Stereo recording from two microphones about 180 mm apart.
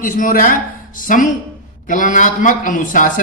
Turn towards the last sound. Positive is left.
turn(degrees=45)  # may be behind; listen again after turning